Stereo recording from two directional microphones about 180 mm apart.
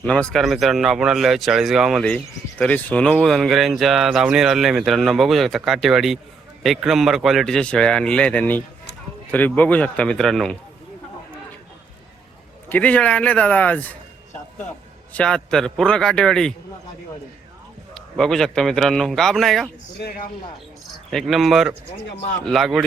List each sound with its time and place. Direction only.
0.0 s a man's voice: 5° left (ahead or behind)
12.6 s a man's voice: 10° left (ahead or behind)
15.1 s speech: 5° left (ahead or behind)
17.9 s speech: centre (ahead or behind)
20.0 s speech: 60° left (ahead or behind)
21.1 s speech: centre (ahead or behind)